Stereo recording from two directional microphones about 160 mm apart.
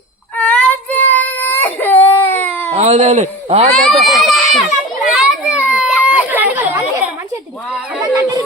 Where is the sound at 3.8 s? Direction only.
Centre (ahead or behind); by 7.0 s 15° right (ahead or behind).